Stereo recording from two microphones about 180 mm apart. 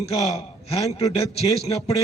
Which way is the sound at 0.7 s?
35° left (ahead or behind).